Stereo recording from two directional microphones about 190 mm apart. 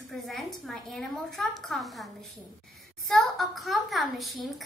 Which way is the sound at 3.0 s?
Centre (ahead or behind).